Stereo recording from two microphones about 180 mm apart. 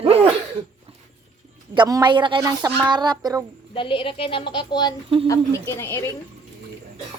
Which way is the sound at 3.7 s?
30° left (ahead or behind).